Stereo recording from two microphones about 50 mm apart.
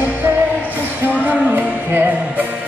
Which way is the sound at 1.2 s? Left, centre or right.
Right.